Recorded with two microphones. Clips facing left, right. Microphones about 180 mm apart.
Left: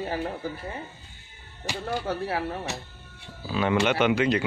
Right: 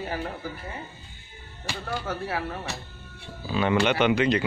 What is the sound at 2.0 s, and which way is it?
Speech, 30° left (ahead or behind).